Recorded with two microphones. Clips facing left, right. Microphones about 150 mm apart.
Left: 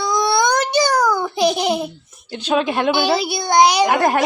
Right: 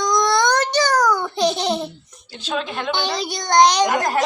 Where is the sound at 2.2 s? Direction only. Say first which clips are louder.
Left 7 dB; 70° left (ahead or behind).